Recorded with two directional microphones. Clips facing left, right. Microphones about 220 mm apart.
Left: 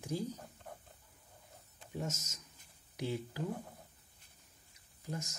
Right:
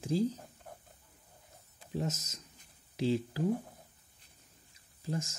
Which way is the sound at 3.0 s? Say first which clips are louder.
Right 7 dB; 30° right (ahead or behind).